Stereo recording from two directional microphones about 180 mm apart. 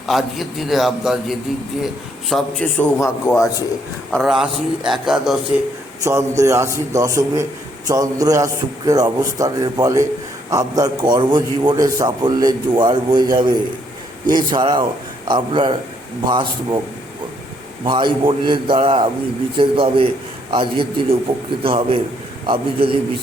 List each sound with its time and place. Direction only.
0.0 s a man's voice: centre (ahead or behind)
6.0 s a man's voice: 15° right (ahead or behind)
17.8 s a man's voice: 25° right (ahead or behind)